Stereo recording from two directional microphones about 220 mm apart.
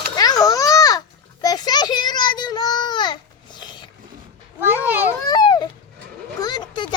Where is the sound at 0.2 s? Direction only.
15° left (ahead or behind).